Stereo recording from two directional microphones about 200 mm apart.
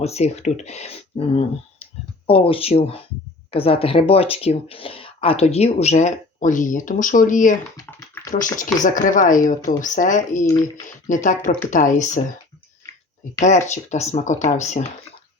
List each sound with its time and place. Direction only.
0.0 s speech: 30° left (ahead or behind)
7.8 s typing: 15° left (ahead or behind)
8.5 s speech: 40° left (ahead or behind)
10.4 s speech: 15° left (ahead or behind)
10.8 s speech: 40° left (ahead or behind)
13.4 s speech: 35° left (ahead or behind)